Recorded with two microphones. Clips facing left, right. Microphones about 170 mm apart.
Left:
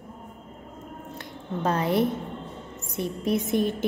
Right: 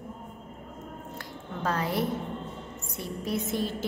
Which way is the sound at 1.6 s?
20° left (ahead or behind).